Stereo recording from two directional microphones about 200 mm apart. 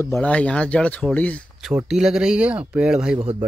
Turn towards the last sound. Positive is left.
turn(degrees=-30)  # may be behind; listen again after turning